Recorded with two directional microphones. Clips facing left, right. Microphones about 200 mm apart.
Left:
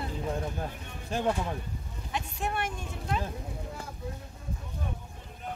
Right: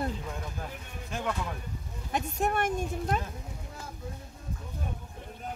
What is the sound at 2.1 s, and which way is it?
Speech, 45° right (ahead or behind).